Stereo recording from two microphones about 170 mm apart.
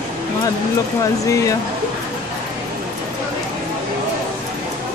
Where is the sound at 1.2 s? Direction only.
20° left (ahead or behind).